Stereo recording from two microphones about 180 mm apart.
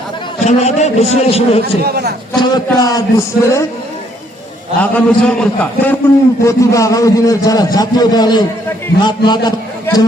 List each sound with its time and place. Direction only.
0.4 s a man's voice: 40° left (ahead or behind)
1.8 s a man's voice: 60° right (ahead or behind)
2.4 s a man's voice: 20° left (ahead or behind)
4.8 s a man's voice: 10° left (ahead or behind)